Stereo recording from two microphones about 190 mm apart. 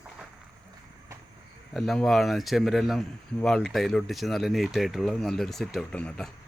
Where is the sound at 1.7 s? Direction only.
Centre (ahead or behind).